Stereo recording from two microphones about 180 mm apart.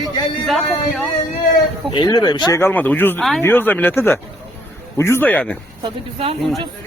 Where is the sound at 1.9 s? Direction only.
25° left (ahead or behind).